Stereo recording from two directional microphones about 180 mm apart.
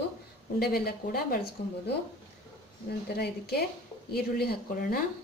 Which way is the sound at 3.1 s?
60° left (ahead or behind).